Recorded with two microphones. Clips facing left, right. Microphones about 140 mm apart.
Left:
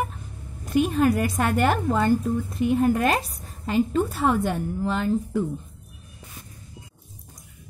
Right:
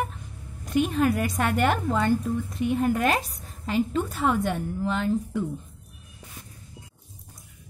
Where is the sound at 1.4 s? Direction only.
35° left (ahead or behind).